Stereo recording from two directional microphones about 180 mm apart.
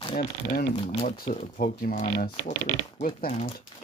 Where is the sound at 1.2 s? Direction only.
50° left (ahead or behind).